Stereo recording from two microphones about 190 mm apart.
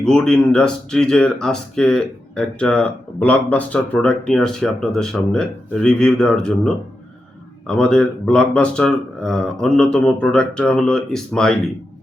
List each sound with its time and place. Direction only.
0.0 s speech: 5° left (ahead or behind)
7.8 s speech: 5° left (ahead or behind)